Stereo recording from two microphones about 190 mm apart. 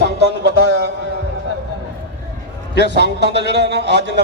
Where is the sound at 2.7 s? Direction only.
60° left (ahead or behind).